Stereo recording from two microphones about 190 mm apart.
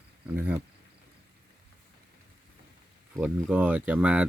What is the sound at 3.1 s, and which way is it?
Speech, 5° right (ahead or behind).